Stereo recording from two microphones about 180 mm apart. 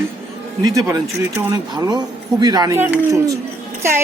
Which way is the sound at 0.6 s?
20° right (ahead or behind).